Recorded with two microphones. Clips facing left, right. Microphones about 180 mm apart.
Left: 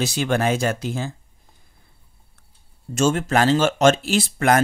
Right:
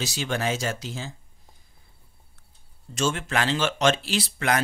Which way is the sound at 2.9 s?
45° left (ahead or behind).